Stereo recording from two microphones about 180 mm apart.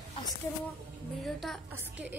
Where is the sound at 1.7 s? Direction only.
10° right (ahead or behind).